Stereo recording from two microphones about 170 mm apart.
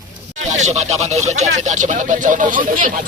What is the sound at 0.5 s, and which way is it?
Speech, 40° right (ahead or behind).